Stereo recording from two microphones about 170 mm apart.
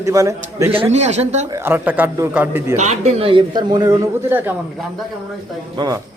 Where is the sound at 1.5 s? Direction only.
15° right (ahead or behind).